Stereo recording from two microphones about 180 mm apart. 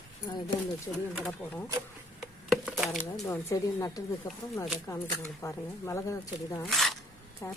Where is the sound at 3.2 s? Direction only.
15° left (ahead or behind).